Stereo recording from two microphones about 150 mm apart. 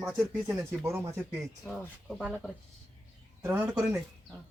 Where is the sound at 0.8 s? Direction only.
15° right (ahead or behind).